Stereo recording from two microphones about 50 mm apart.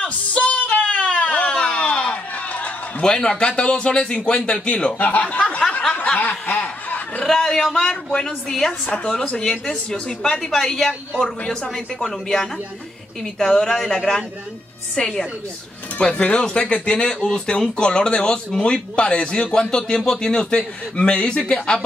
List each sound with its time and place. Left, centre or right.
0.0 s a sound: left
2.3 s a sound: left
3.0 s a woman's voice: centre
4.9 s speech: left
5.3 s a sound: left
6.1 s snicker: left
7.2 s a woman's voice: centre
8.8 s a woman's voice: left
10.4 s speech: centre
11.1 s speech: centre
11.7 s a woman's voice: centre